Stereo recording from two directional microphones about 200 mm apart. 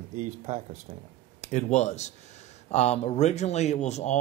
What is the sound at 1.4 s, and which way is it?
Speech, 35° left (ahead or behind).